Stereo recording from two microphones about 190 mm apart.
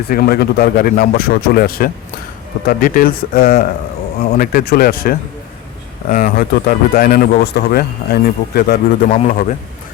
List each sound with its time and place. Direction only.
0.1 s a man's voice: 50° left (ahead or behind)
9.1 s a man's voice: 45° left (ahead or behind)